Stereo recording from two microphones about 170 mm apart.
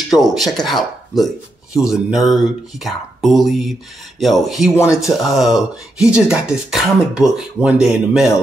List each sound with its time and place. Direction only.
0.1 s speech: centre (ahead or behind)
4.7 s speech: 15° left (ahead or behind)
5.3 s speech: centre (ahead or behind)